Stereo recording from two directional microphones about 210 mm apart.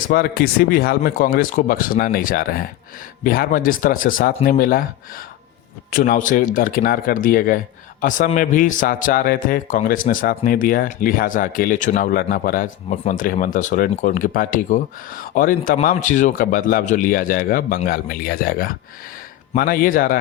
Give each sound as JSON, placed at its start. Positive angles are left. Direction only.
{"t": 0.1, "sound": "a man's voice", "side_deg": 45}
{"t": 5.9, "sound": "a man's voice", "side_deg": 40}